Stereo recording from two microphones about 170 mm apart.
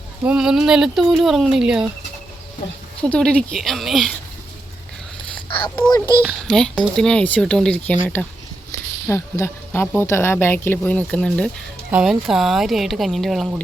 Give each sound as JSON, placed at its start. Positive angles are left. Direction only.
{"t": 0.3, "sound": "speech", "side_deg": -5}
{"t": 3.0, "sound": "speech", "side_deg": 5}
{"t": 5.3, "sound": "a sound", "side_deg": 30}
{"t": 6.4, "sound": "speech", "side_deg": 5}